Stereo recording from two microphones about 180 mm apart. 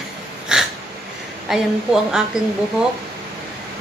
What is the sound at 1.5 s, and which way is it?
Speech, centre (ahead or behind).